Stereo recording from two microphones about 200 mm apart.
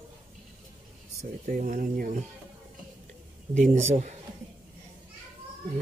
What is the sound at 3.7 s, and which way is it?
Speech, 35° right (ahead or behind).